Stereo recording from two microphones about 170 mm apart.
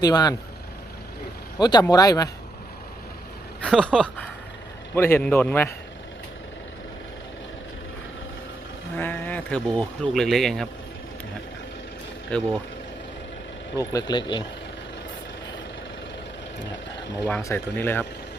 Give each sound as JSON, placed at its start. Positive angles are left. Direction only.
{"t": 0.0, "sound": "speech", "side_deg": 25}
{"t": 1.5, "sound": "speech", "side_deg": 25}
{"t": 3.6, "sound": "speech", "side_deg": 5}
{"t": 9.0, "sound": "speech", "side_deg": 10}
{"t": 12.3, "sound": "speech", "side_deg": 5}
{"t": 13.7, "sound": "speech", "side_deg": 25}
{"t": 17.2, "sound": "speech", "side_deg": 10}